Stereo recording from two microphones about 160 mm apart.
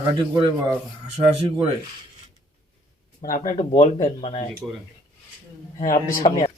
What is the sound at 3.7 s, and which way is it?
Speech, 35° left (ahead or behind).